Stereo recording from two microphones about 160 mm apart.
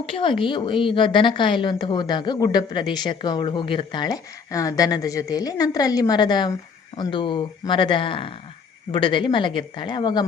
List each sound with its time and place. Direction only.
0.0 s a woman's voice: 35° left (ahead or behind)